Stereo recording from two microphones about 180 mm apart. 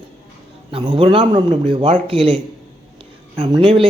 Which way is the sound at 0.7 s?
30° right (ahead or behind).